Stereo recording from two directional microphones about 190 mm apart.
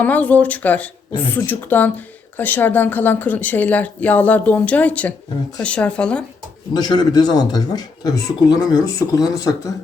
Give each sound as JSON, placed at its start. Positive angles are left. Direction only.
{"t": 0.0, "sound": "speech", "side_deg": 10}
{"t": 6.7, "sound": "speech", "side_deg": 20}